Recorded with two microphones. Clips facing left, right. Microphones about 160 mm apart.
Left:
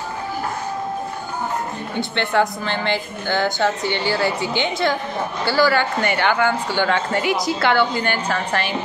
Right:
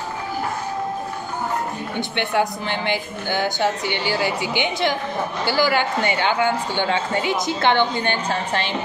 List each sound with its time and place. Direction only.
2.0 s a woman's voice: 15° right (ahead or behind)